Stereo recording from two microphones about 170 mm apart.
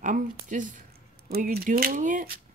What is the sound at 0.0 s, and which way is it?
Speech, 50° right (ahead or behind).